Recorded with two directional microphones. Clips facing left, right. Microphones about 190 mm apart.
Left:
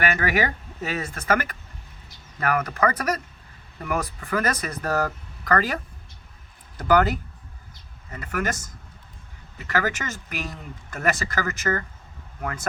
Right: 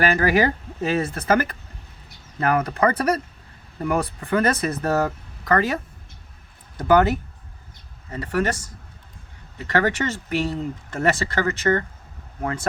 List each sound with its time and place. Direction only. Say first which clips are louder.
0.0 s speech: right 5 dB; 30° right (ahead or behind)